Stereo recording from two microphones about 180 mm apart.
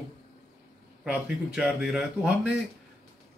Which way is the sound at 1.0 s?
5° right (ahead or behind).